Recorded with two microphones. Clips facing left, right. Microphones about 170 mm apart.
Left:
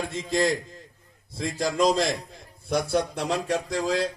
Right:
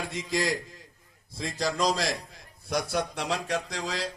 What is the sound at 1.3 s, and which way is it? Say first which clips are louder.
A man's voice: left 3 dB; 50° left (ahead or behind).